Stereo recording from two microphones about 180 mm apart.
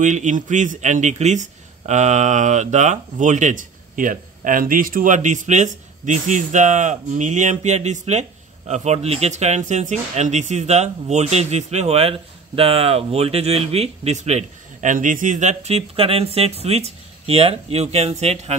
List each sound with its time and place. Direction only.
0.0 s speech: 45° right (ahead or behind)